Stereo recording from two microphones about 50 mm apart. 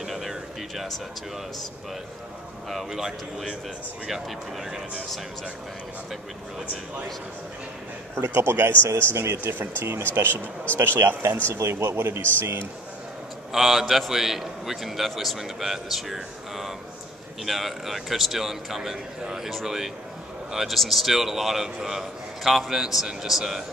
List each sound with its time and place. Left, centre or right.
0.0 s a sound: centre
2.7 s a man's voice: centre
8.1 s a man's voice: right
8.4 s speech: right
9.4 s speech: right
13.5 s a man's voice: centre